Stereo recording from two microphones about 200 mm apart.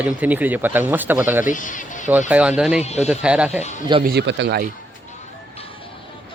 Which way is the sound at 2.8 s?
35° left (ahead or behind).